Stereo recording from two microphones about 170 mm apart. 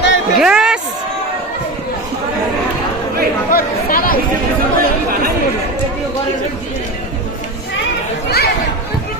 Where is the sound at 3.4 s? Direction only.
60° left (ahead or behind).